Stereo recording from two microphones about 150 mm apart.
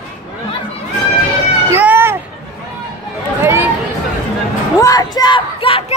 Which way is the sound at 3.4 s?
15° right (ahead or behind).